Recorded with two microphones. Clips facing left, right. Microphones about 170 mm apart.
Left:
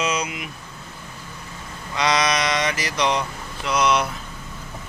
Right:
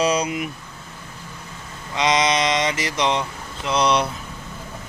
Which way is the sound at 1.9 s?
20° right (ahead or behind).